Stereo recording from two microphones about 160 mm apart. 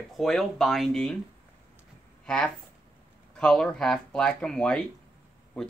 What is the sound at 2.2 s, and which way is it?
Speech, 5° left (ahead or behind).